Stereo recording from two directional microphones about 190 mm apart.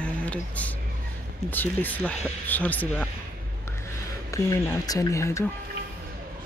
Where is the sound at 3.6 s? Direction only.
15° left (ahead or behind).